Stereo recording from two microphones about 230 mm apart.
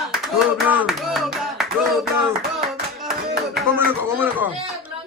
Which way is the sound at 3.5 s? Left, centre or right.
Centre.